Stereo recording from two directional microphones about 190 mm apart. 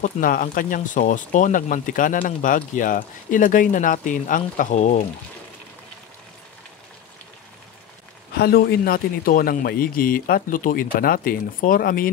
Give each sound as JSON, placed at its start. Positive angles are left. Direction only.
{"t": 0.0, "sound": "speech", "side_deg": 45}
{"t": 8.4, "sound": "speech", "side_deg": 55}